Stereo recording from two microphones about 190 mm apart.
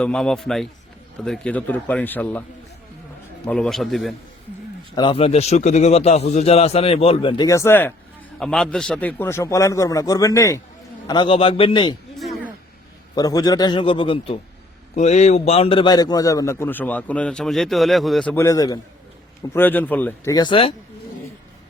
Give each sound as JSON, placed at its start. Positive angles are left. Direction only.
{"t": 0.0, "sound": "a man's voice", "side_deg": 5}
{"t": 3.4, "sound": "a man's voice", "side_deg": 5}
{"t": 4.9, "sound": "a man's voice", "side_deg": 25}
{"t": 12.1, "sound": "a sound", "side_deg": 0}
{"t": 13.1, "sound": "a man's voice", "side_deg": 20}
{"t": 20.3, "sound": "a man's voice", "side_deg": 25}